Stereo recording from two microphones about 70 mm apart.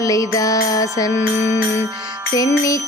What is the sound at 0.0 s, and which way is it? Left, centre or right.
Music, left.